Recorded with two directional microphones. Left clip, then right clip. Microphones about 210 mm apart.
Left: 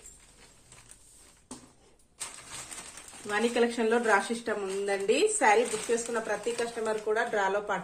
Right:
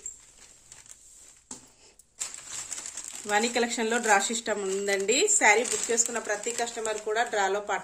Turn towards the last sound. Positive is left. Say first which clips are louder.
# right 1 dB
turn(degrees=-40)  # may be behind; listen again after turning